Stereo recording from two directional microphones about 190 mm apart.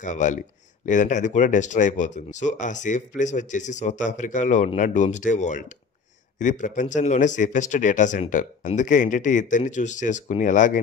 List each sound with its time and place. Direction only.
0.0 s speech: 40° left (ahead or behind)